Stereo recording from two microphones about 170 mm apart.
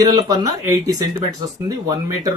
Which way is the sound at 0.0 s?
20° right (ahead or behind).